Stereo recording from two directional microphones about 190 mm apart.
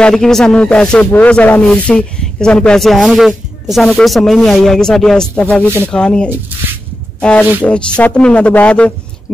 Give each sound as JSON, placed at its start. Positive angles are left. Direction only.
{"t": 0.0, "sound": "a man's voice", "side_deg": 0}